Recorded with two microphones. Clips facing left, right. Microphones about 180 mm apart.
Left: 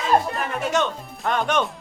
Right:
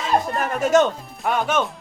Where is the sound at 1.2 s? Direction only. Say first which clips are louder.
Right 1 dB; 5° right (ahead or behind).